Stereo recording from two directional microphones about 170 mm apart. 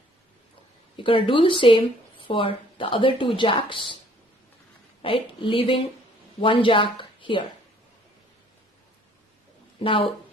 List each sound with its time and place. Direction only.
0.9 s a woman's voice: 30° left (ahead or behind)
5.0 s a woman's voice: 30° left (ahead or behind)
9.8 s speech: 30° left (ahead or behind)